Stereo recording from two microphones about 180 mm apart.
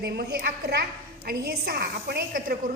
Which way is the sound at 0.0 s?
55° right (ahead or behind).